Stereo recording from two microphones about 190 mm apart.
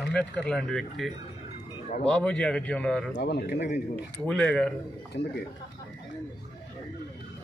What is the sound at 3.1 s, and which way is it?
Speech, 60° left (ahead or behind).